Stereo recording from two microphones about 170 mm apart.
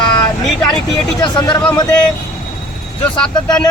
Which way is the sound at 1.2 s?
25° left (ahead or behind).